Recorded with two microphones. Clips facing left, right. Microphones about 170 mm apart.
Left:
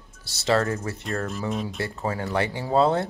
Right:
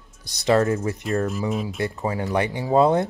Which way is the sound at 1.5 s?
5° right (ahead or behind).